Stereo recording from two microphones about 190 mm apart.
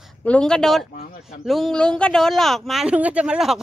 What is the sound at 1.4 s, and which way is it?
Speech, centre (ahead or behind).